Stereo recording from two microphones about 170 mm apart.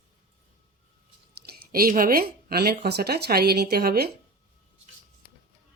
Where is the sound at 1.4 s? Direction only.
60° right (ahead or behind).